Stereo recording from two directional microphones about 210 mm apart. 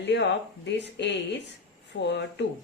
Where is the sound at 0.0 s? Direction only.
55° left (ahead or behind).